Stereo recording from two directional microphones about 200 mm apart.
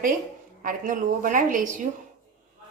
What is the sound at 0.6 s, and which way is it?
A woman's voice, 45° right (ahead or behind).